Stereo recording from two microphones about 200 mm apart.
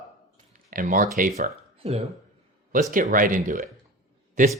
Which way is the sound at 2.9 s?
40° right (ahead or behind).